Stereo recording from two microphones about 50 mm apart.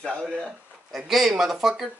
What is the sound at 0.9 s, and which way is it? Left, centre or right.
Speech, centre.